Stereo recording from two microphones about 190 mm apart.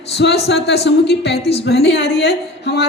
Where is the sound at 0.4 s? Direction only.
60° left (ahead or behind).